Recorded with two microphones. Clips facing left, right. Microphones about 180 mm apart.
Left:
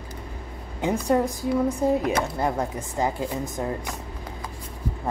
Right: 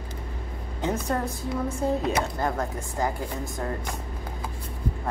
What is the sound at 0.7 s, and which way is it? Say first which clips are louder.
A woman's voice: left 5 dB; 15° left (ahead or behind).